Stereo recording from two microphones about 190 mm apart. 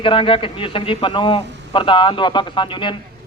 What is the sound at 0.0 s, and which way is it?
A man's voice, 30° left (ahead or behind).